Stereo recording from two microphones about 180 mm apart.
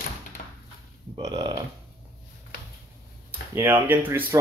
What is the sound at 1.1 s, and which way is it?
Speech, 30° right (ahead or behind).